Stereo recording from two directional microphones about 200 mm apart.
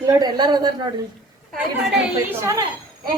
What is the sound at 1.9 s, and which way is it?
Speech, 10° right (ahead or behind).